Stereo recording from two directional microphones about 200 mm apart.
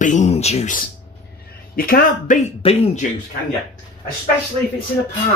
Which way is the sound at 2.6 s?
30° left (ahead or behind).